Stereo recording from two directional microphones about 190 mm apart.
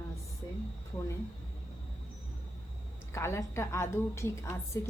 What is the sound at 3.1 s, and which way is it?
A woman's voice, 15° left (ahead or behind).